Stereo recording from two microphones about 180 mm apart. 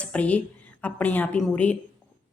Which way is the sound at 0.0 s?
5° left (ahead or behind).